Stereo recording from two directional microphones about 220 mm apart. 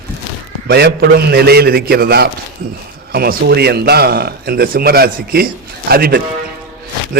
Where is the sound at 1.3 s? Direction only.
45° right (ahead or behind).